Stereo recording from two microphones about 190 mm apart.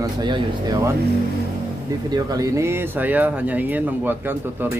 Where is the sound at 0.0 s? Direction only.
20° right (ahead or behind).